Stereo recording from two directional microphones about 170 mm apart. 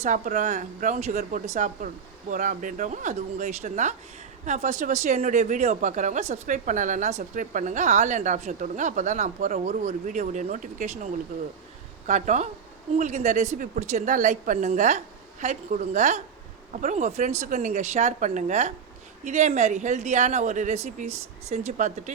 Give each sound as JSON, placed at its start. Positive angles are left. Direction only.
{"t": 0.0, "sound": "speech", "side_deg": -45}